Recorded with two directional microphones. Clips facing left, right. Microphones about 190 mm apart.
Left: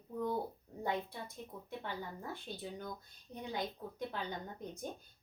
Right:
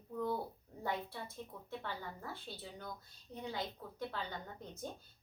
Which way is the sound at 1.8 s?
15° left (ahead or behind).